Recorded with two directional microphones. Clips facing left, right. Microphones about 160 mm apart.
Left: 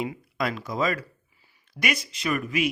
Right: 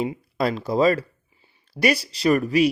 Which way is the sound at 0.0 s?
30° right (ahead or behind).